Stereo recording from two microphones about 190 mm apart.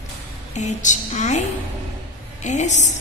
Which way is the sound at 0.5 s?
40° left (ahead or behind).